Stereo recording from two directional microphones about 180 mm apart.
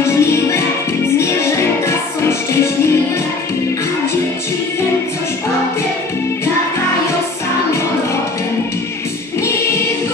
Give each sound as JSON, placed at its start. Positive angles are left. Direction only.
{"t": 0.0, "sound": "music", "side_deg": 15}